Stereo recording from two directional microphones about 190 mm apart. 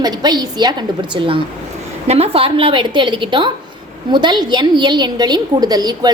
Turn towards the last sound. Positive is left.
turn(degrees=-20)  # may be behind; listen again after turning